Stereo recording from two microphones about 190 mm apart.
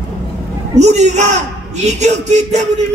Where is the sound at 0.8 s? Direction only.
35° right (ahead or behind).